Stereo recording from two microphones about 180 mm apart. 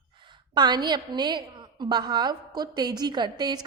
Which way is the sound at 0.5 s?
25° right (ahead or behind).